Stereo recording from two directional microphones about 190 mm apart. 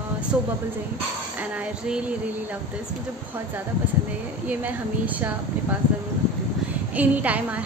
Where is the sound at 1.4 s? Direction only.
5° right (ahead or behind).